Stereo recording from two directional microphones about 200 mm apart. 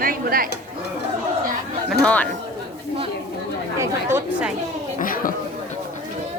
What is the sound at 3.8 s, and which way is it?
Chatter, 15° right (ahead or behind).